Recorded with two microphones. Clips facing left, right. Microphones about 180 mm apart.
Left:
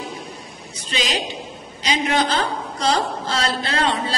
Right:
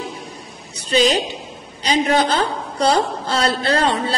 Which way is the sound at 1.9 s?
40° right (ahead or behind).